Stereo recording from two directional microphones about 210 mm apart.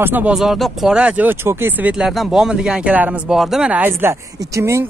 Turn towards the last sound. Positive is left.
turn(degrees=-15)  # may be behind; listen again after turning